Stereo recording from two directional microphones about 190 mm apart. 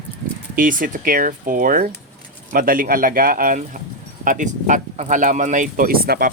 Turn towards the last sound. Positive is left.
turn(degrees=-50)  # may be behind; listen again after turning